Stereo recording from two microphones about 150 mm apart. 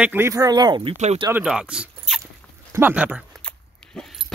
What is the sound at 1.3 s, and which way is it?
Speech, 5° right (ahead or behind).